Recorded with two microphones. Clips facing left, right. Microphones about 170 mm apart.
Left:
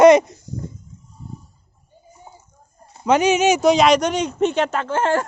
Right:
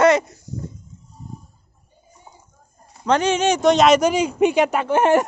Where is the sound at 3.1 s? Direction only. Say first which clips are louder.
Left 2 dB; 10° left (ahead or behind).